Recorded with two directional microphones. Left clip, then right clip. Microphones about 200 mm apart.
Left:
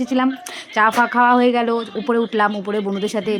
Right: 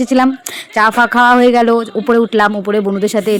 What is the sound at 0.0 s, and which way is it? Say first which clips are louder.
Speech: right 7 dB; 35° right (ahead or behind).